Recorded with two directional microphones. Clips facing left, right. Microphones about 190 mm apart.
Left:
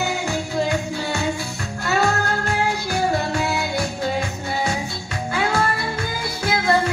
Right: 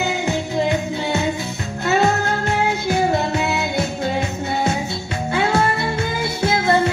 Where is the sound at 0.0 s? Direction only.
20° right (ahead or behind).